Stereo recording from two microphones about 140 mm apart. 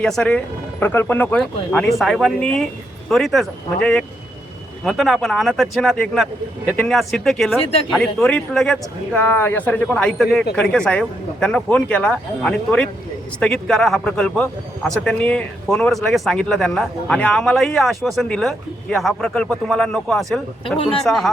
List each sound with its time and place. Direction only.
0.0 s speech: 5° left (ahead or behind)
7.6 s speech: 45° left (ahead or behind)
7.9 s speech: 5° left (ahead or behind)